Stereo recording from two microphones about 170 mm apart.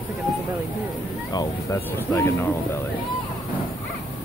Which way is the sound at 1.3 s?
20° left (ahead or behind).